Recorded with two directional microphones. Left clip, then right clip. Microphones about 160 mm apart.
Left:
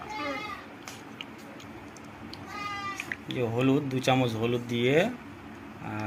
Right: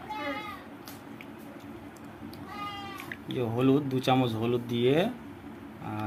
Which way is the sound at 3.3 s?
5° right (ahead or behind).